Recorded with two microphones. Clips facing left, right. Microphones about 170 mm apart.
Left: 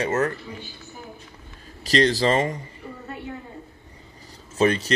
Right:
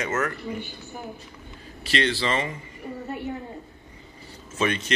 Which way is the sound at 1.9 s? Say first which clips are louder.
Left 5 dB; 40° left (ahead or behind).